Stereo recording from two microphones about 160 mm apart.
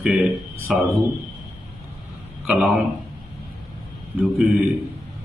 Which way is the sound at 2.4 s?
Centre (ahead or behind).